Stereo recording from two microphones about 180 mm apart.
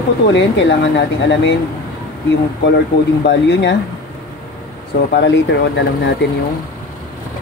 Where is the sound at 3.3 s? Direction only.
75° left (ahead or behind).